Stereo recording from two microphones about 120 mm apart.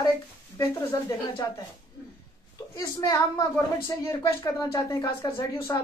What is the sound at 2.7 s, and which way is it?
A woman's voice, 35° left (ahead or behind).